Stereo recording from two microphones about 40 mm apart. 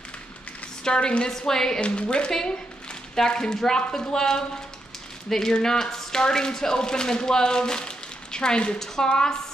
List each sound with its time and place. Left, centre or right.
0.8 s speech: left
1.3 s speech: centre
1.8 s speech: left